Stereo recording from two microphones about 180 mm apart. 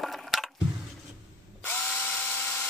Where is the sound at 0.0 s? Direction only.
Centre (ahead or behind).